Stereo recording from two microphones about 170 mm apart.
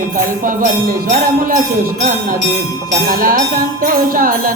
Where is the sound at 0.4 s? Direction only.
55° right (ahead or behind).